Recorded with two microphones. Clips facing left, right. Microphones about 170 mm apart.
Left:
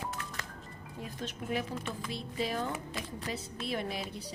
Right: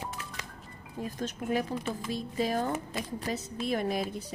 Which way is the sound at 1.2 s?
45° right (ahead or behind).